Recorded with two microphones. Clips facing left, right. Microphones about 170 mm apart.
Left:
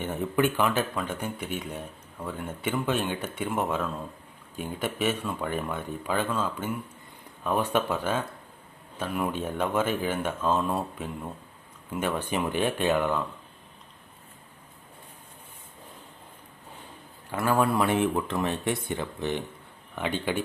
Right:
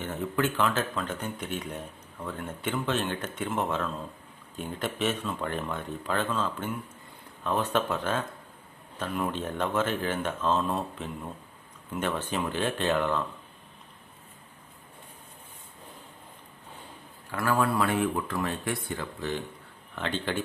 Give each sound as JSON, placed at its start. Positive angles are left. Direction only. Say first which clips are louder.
{"t": 0.0, "sound": "speech", "louder": "left 3 dB", "side_deg": 15}
{"t": 17.3, "sound": "speech", "louder": "left 2 dB", "side_deg": 20}